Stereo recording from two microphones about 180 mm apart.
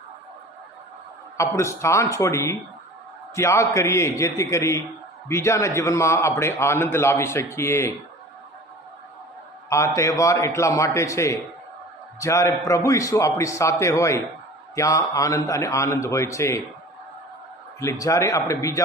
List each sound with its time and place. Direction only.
1.4 s a man's voice: 15° left (ahead or behind)
9.6 s a man's voice: 15° left (ahead or behind)
17.7 s a man's voice: 15° left (ahead or behind)